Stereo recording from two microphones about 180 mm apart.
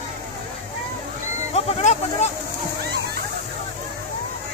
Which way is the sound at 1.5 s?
35° left (ahead or behind).